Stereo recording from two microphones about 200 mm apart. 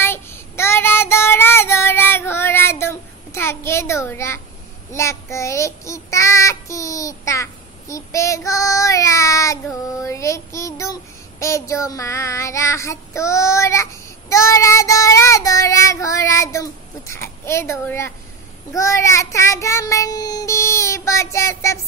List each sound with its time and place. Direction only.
0.0 s child singing: 10° left (ahead or behind)